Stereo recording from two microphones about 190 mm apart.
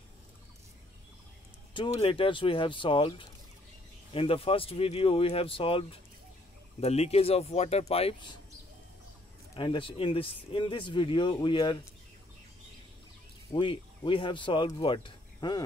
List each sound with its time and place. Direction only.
1.7 s speech: 25° left (ahead or behind)
9.6 s speech: 25° left (ahead or behind)
13.5 s speech: 25° left (ahead or behind)